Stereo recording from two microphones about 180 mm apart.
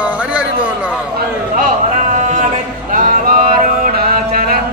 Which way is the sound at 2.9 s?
50° right (ahead or behind).